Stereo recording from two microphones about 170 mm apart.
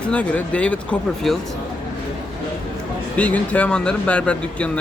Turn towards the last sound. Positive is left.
turn(degrees=5)  # may be behind; listen again after turning